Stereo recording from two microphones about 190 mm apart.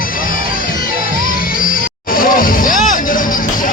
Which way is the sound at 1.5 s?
45° left (ahead or behind).